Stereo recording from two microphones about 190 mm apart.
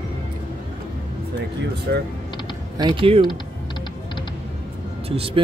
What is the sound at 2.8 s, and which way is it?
Speech, 25° right (ahead or behind).